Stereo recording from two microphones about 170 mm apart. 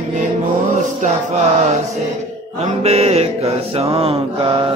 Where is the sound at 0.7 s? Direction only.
45° right (ahead or behind).